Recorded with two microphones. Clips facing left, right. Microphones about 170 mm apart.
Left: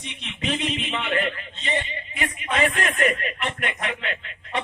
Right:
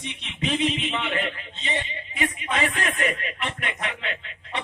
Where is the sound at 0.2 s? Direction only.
55° left (ahead or behind).